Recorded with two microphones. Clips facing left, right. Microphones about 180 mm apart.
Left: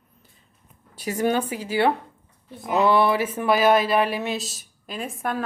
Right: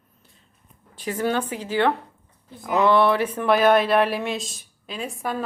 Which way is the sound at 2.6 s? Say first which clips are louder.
Even; 20° left (ahead or behind).